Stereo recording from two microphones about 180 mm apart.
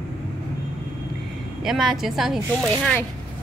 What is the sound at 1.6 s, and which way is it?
Speech, centre (ahead or behind).